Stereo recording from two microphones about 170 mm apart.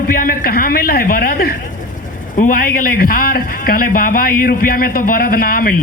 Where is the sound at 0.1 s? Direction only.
60° left (ahead or behind).